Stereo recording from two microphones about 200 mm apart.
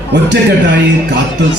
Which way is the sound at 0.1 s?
60° right (ahead or behind).